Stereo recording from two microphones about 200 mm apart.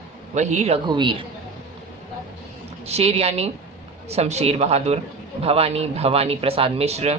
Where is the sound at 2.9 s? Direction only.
30° right (ahead or behind).